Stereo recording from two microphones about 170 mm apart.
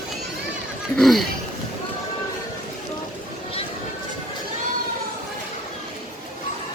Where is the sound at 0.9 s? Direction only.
Centre (ahead or behind).